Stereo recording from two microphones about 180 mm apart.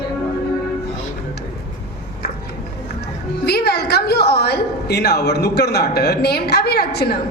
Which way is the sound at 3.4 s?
65° left (ahead or behind).